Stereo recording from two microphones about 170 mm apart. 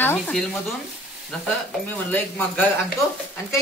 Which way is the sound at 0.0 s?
10° left (ahead or behind).